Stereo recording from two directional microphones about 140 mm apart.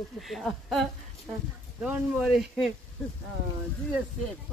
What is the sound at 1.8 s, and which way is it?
Speech, 10° right (ahead or behind).